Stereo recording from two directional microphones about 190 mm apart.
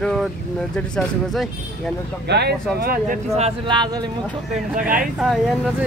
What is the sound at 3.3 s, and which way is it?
Speech, 30° right (ahead or behind).